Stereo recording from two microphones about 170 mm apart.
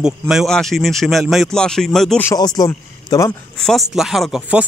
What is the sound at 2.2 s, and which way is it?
A man's voice, 20° left (ahead or behind).